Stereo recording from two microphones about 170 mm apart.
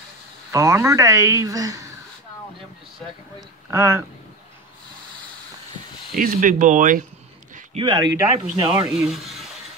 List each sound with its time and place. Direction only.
0.5 s speech: 15° right (ahead or behind)
3.3 s speech: 15° right (ahead or behind)
6.1 s speech: 50° right (ahead or behind)
7.7 s speech: 30° right (ahead or behind)
8.9 s speech: 5° right (ahead or behind)